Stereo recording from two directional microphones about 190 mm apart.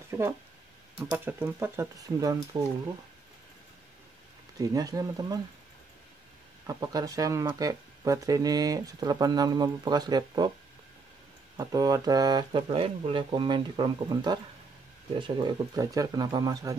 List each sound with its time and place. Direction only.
0.1 s speech: 15° right (ahead or behind)
4.6 s speech: 20° right (ahead or behind)
6.7 s speech: 20° right (ahead or behind)
11.5 s speech: 20° right (ahead or behind)